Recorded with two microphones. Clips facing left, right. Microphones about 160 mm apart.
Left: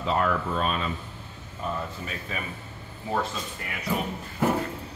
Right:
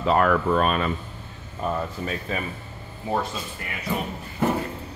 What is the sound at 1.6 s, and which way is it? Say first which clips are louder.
Speech: right 5 dB; 45° right (ahead or behind).